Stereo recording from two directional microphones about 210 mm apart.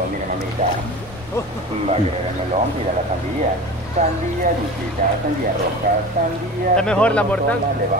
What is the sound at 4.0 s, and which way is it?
Speech, 30° right (ahead or behind).